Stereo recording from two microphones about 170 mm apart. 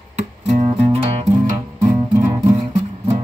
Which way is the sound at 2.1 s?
20° right (ahead or behind).